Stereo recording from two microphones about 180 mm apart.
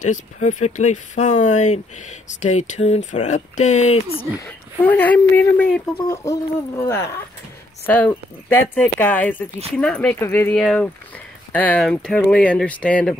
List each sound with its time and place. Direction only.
0.0 s speech: 40° left (ahead or behind)
4.7 s speech: 10° left (ahead or behind)
6.8 s speech: 15° left (ahead or behind)
10.6 s speech: centre (ahead or behind)